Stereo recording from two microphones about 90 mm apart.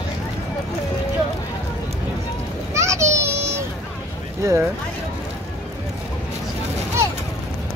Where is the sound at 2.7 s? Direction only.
35° right (ahead or behind).